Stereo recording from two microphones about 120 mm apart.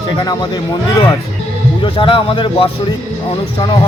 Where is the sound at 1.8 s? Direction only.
45° left (ahead or behind).